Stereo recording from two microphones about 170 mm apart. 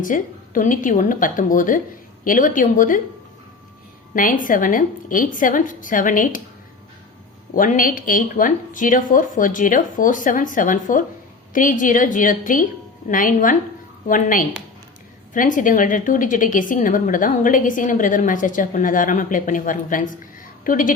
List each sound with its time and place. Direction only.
0.0 s a woman's voice: 50° left (ahead or behind)
4.1 s a woman's voice: 55° left (ahead or behind)
7.5 s a woman's voice: 55° left (ahead or behind)